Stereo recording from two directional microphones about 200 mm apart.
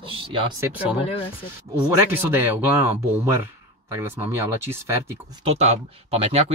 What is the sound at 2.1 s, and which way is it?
Speech, 10° right (ahead or behind).